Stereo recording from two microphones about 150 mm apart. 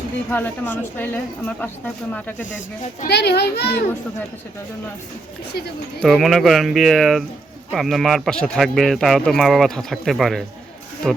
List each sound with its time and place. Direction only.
0.3 s speech: 10° left (ahead or behind)
3.0 s a child's voice: 90° left
6.0 s a man's voice: centre (ahead or behind)